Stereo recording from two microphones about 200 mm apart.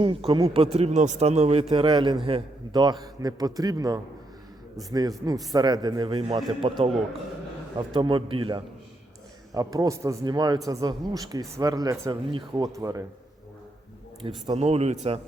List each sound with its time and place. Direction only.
0.0 s a man's voice: 30° right (ahead or behind)
7.9 s a man's voice: 25° right (ahead or behind)
14.5 s a man's voice: 30° right (ahead or behind)